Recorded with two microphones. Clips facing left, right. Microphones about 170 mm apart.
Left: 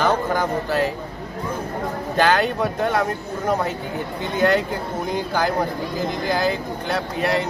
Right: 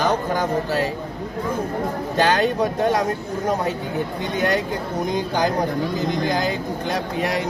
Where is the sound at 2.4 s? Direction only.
15° right (ahead or behind).